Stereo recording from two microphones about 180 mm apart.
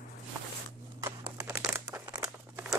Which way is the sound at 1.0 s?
15° right (ahead or behind).